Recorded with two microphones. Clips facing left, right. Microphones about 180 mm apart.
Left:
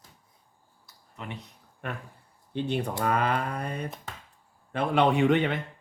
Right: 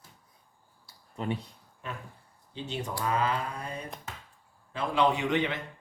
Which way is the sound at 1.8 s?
60° left (ahead or behind).